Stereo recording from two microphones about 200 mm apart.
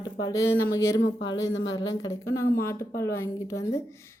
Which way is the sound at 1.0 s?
65° left (ahead or behind).